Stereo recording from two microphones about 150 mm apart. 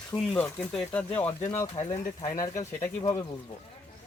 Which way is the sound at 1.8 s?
40° left (ahead or behind).